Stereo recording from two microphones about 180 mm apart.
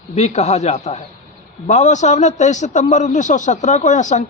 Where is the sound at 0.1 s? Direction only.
40° left (ahead or behind).